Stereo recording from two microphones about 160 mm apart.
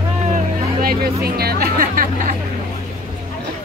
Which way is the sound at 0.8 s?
75° right (ahead or behind).